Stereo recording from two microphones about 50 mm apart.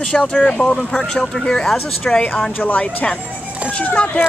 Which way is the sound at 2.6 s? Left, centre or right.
Left.